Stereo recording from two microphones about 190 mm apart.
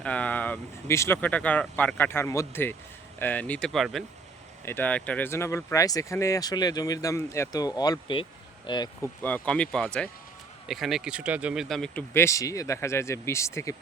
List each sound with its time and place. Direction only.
0.0 s speech: 5° left (ahead or behind)
4.6 s speech: 10° left (ahead or behind)
9.2 s speech: 5° left (ahead or behind)